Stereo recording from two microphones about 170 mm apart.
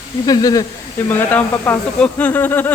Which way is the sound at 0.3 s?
20° left (ahead or behind).